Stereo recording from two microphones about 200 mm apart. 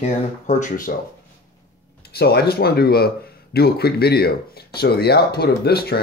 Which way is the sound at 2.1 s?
50° left (ahead or behind).